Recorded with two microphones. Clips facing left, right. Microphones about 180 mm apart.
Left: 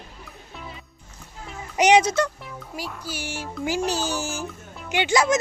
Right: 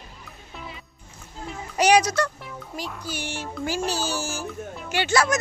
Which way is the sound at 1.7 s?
20° left (ahead or behind).